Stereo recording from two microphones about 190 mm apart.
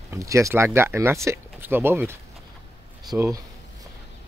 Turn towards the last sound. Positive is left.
turn(degrees=-15)  # may be behind; listen again after turning